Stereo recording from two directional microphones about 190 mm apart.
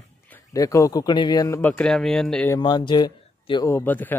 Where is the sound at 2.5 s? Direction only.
20° left (ahead or behind).